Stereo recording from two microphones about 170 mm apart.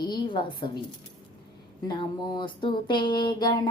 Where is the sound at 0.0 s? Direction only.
30° left (ahead or behind).